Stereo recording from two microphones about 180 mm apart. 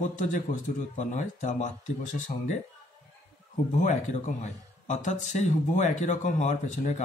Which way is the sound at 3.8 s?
40° left (ahead or behind).